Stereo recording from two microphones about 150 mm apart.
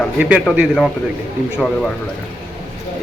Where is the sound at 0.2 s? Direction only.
10° right (ahead or behind).